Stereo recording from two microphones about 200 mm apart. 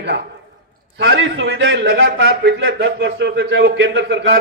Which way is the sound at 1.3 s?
75° right (ahead or behind).